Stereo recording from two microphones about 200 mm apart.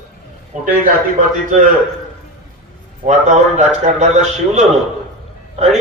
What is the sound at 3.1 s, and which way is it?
A man's voice, 35° right (ahead or behind).